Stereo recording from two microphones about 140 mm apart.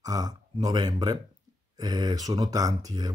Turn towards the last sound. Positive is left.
turn(degrees=-25)  # may be behind; listen again after turning